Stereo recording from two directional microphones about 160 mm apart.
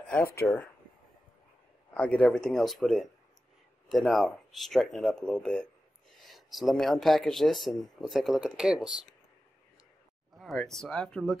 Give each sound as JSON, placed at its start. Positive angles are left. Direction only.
{"t": 0.1, "sound": "speech", "side_deg": 15}
{"t": 2.0, "sound": "speech", "side_deg": 10}
{"t": 10.3, "sound": "speech", "side_deg": 0}